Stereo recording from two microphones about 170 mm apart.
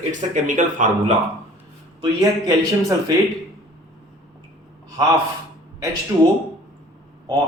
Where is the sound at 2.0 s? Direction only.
20° right (ahead or behind).